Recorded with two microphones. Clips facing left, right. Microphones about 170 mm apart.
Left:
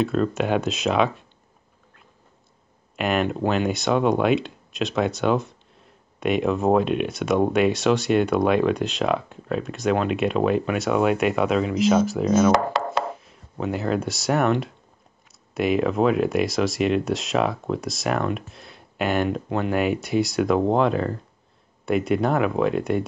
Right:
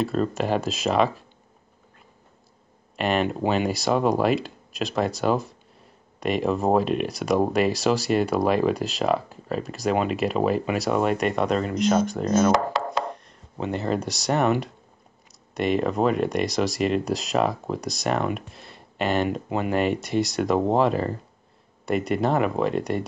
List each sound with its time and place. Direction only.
0.0 s speech: centre (ahead or behind)
3.0 s speech: centre (ahead or behind)
12.5 s chopping: 70° left (ahead or behind)
13.1 s speech: 5° left (ahead or behind)